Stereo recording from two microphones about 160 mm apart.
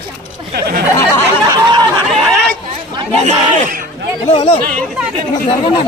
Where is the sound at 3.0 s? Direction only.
40° right (ahead or behind).